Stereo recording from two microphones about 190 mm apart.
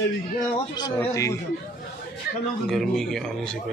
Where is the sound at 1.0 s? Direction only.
15° left (ahead or behind).